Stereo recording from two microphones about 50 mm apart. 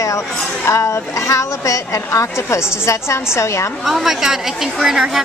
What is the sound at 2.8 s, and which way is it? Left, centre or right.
Speech, left.